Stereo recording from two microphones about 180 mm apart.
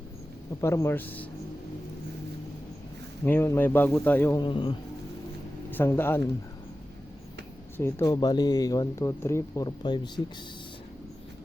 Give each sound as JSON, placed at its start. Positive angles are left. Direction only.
{"t": 0.6, "sound": "speech", "side_deg": 15}
{"t": 3.2, "sound": "speech", "side_deg": 15}
{"t": 4.4, "sound": "speech", "side_deg": 25}
{"t": 5.7, "sound": "speech", "side_deg": 10}
{"t": 7.8, "sound": "speech", "side_deg": 15}